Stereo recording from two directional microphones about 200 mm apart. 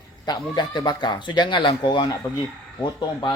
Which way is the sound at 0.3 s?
20° left (ahead or behind).